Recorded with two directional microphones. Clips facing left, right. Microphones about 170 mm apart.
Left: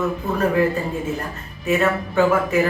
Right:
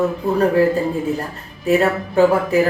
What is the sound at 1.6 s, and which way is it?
Speech, 35° right (ahead or behind).